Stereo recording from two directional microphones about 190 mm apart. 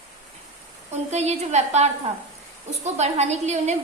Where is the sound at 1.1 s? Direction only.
35° right (ahead or behind).